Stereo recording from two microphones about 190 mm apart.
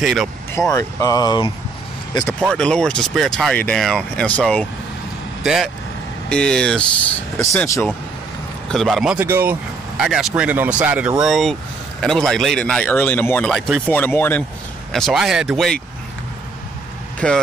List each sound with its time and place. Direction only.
0.0 s a man's voice: centre (ahead or behind)
0.6 s speech: 15° left (ahead or behind)
2.4 s a man's voice: 5° left (ahead or behind)
7.3 s speech: 15° left (ahead or behind)
8.6 s a man's voice: centre (ahead or behind)
17.2 s a man's voice: 5° left (ahead or behind)